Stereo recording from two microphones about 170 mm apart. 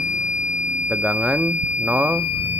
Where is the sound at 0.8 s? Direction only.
5° right (ahead or behind).